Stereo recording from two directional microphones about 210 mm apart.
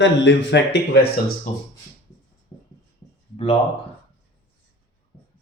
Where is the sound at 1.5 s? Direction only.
35° left (ahead or behind).